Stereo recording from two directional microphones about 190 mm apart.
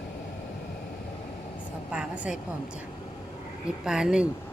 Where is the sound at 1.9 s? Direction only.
5° right (ahead or behind).